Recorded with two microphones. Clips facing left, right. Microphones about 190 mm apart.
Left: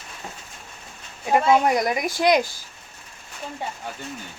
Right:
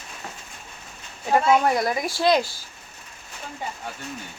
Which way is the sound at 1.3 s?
20° left (ahead or behind).